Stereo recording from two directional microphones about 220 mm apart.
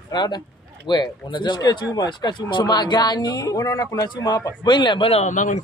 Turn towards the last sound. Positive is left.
turn(degrees=35)  # may be behind; listen again after turning